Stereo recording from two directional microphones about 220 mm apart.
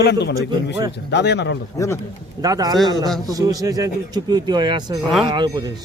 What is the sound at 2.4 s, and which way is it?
Speech, 15° right (ahead or behind).